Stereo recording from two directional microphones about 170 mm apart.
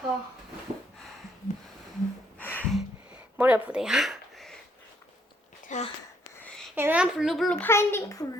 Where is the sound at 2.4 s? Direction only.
10° left (ahead or behind).